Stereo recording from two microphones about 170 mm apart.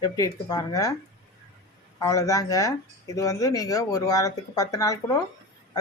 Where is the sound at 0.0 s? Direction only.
25° left (ahead or behind).